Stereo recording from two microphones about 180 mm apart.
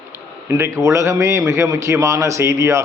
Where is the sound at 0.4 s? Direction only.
15° right (ahead or behind).